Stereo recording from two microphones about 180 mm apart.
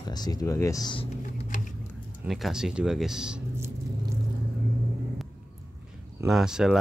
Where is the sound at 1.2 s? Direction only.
45° left (ahead or behind).